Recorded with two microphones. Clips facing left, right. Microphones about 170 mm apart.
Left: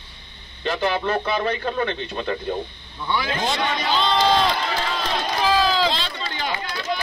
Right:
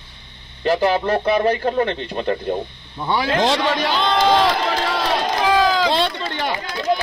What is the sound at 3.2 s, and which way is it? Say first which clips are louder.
Speech: right 9 dB; 90° right.